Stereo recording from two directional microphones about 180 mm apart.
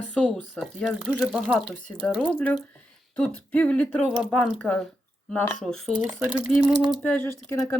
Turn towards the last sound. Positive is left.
turn(degrees=15)  # may be behind; listen again after turning